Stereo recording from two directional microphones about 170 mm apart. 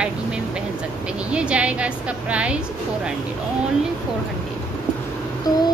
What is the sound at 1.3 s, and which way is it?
A woman's voice, 5° right (ahead or behind).